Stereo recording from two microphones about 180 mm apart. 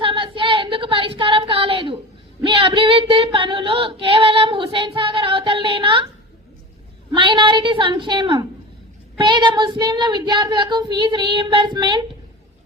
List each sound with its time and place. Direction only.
0.0 s child singing: 30° right (ahead or behind)
2.4 s female singing: 30° right (ahead or behind)
4.0 s child singing: 30° right (ahead or behind)
7.1 s child singing: 25° right (ahead or behind)